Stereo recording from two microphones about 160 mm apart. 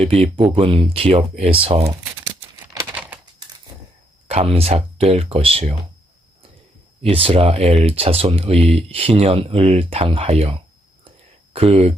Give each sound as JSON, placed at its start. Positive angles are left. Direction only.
{"t": 0.0, "sound": "speech", "side_deg": -35}
{"t": 4.3, "sound": "speech", "side_deg": -40}
{"t": 7.0, "sound": "speech", "side_deg": -35}